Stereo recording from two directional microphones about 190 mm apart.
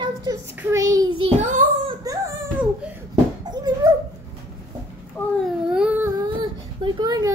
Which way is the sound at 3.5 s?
20° right (ahead or behind).